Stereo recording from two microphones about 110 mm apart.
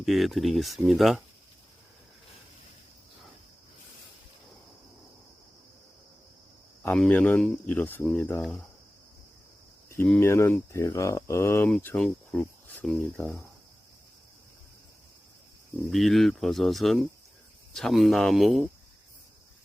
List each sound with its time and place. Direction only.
0.0 s speech: centre (ahead or behind)
7.1 s speech: 15° left (ahead or behind)
8.0 s speech: 5° left (ahead or behind)
10.2 s speech: 25° left (ahead or behind); by 13.1 s 5° left (ahead or behind)
13.1 s speech: 15° left (ahead or behind)
15.9 s speech: centre (ahead or behind)